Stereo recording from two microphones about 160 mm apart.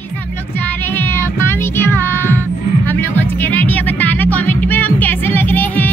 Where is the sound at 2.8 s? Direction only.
10° left (ahead or behind).